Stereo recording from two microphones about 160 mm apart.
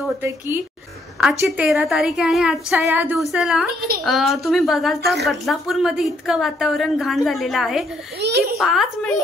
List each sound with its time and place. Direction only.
1.4 s a woman's voice: 5° right (ahead or behind)
8.2 s a child's voice: 85° right
8.5 s a woman's voice: centre (ahead or behind)